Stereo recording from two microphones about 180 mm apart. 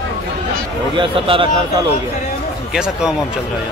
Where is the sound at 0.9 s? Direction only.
30° right (ahead or behind).